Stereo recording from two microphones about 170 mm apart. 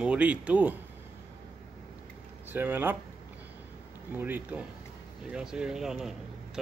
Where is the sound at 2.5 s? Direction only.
10° right (ahead or behind).